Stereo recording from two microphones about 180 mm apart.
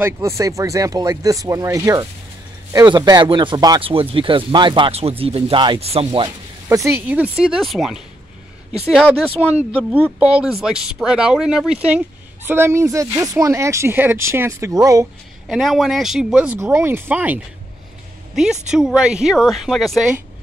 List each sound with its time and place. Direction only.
0.4 s speech: 15° right (ahead or behind); by 8.0 s centre (ahead or behind)
9.7 s speech: 5° right (ahead or behind)
15.4 s speech: centre (ahead or behind)
16.5 s a woman's voice: 15° right (ahead or behind)